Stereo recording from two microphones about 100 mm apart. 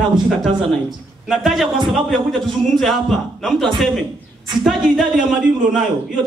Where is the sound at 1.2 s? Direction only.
Centre (ahead or behind).